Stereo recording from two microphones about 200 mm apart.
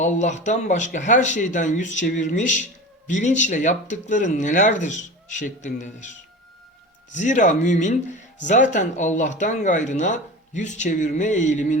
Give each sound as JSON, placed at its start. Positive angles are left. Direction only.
{"t": 0.0, "sound": "speech", "side_deg": 35}